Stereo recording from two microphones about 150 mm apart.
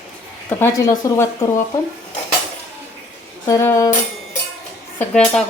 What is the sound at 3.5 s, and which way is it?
Speech, 20° left (ahead or behind).